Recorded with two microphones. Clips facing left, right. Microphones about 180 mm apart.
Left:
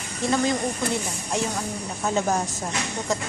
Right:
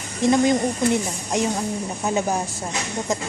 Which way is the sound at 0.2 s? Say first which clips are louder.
Right 6 dB; 20° right (ahead or behind).